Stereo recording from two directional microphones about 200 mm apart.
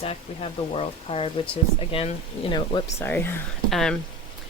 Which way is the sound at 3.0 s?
10° left (ahead or behind).